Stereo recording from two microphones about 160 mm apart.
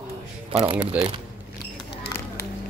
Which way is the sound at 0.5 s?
35° right (ahead or behind).